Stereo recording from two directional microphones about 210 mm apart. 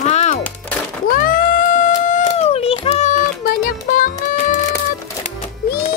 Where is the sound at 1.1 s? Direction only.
40° left (ahead or behind).